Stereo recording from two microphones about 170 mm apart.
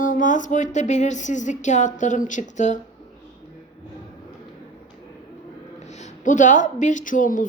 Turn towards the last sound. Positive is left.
turn(degrees=50)  # may be behind; listen again after turning